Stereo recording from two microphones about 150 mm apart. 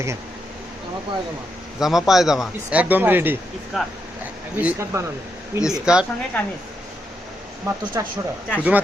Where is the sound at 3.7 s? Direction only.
Centre (ahead or behind).